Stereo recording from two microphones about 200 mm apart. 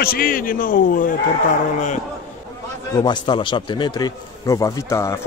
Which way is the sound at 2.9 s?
20° left (ahead or behind).